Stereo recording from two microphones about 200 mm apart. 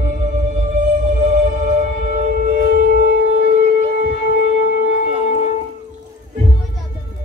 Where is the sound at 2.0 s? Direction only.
40° right (ahead or behind).